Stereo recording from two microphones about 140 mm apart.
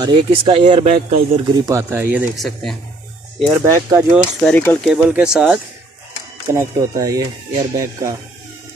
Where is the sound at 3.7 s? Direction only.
25° right (ahead or behind).